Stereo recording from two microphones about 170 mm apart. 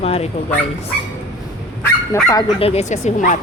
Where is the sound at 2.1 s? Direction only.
15° left (ahead or behind).